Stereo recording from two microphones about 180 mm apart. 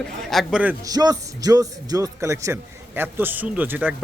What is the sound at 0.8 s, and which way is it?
A man's voice, 20° right (ahead or behind).